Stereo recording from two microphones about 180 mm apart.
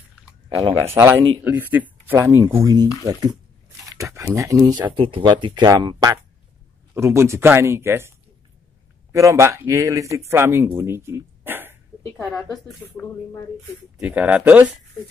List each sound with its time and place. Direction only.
0.8 s speech: 15° right (ahead or behind)
4.9 s speech: 30° right (ahead or behind); by 8.1 s 15° right (ahead or behind)
9.2 s speech: 15° right (ahead or behind)
12.4 s speech: 20° left (ahead or behind)
13.9 s speech: 10° right (ahead or behind)